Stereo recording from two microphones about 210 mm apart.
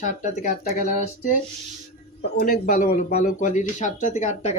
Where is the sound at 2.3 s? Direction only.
45° left (ahead or behind).